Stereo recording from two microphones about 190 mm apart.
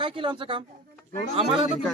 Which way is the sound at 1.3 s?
30° right (ahead or behind).